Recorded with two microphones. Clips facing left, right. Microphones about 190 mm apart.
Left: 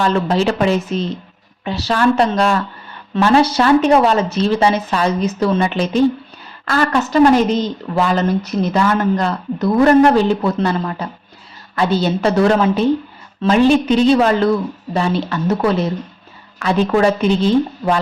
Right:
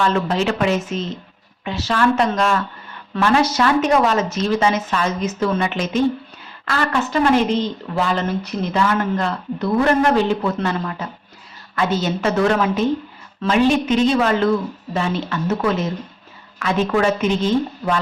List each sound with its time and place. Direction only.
0.0 s speech: 35° left (ahead or behind)